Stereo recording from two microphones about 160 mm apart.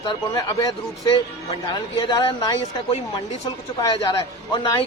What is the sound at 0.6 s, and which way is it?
Speech, 25° left (ahead or behind).